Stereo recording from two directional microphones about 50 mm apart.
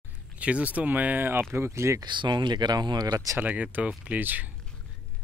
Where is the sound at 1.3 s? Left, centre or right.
Right.